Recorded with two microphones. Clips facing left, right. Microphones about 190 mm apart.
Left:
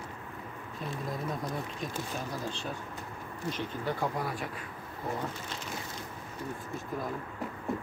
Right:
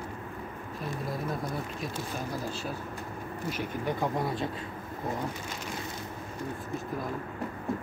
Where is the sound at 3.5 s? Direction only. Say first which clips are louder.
Right 1 dB; 10° right (ahead or behind).